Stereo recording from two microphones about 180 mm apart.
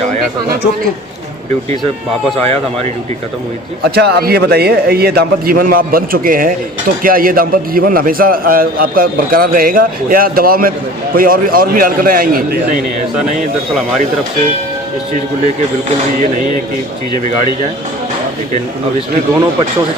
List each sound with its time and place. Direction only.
3.9 s a man's voice: 60° right (ahead or behind)